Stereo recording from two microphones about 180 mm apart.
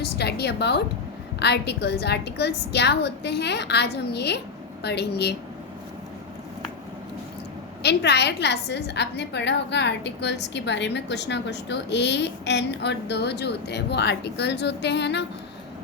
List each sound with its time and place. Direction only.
0.0 s a woman's voice: 65° left (ahead or behind)
7.8 s a woman's voice: 70° left (ahead or behind)